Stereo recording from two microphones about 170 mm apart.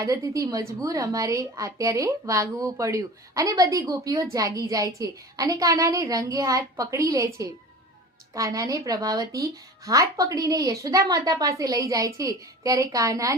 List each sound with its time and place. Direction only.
0.0 s a woman's voice: 20° right (ahead or behind)